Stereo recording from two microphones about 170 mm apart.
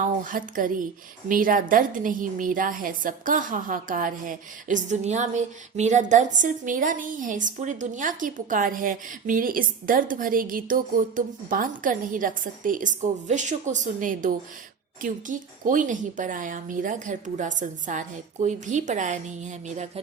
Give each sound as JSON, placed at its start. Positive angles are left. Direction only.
{"t": 0.3, "sound": "a woman's voice", "side_deg": -55}